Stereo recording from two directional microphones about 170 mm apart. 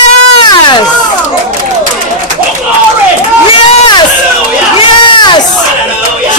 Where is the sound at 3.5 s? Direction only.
30° left (ahead or behind).